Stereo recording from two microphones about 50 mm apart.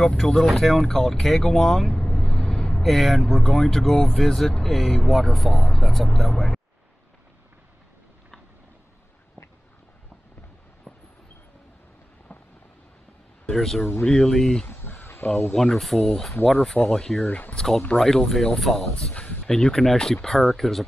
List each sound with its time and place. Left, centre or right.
0.2 s speech: centre
2.0 s vehicle: left
2.8 s speech: centre
13.5 s speech: centre
14.7 s a sound: left
15.5 s speech: centre
16.8 s speech: centre
17.3 s speech: left
17.6 s speech: centre
18.9 s speech: left
19.4 s speech: centre